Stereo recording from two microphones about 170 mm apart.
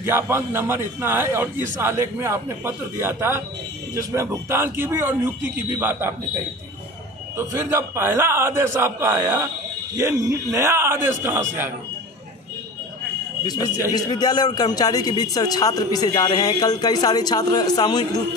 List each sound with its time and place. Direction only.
0.0 s a man's voice: 15° right (ahead or behind)
7.3 s a man's voice: 15° right (ahead or behind)
13.9 s a man's voice: 25° left (ahead or behind)